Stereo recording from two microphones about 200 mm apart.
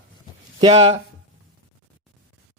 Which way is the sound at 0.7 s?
35° right (ahead or behind).